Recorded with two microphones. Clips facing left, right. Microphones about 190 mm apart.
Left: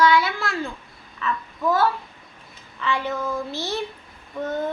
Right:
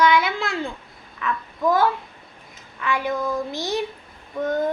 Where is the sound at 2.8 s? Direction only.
10° right (ahead or behind).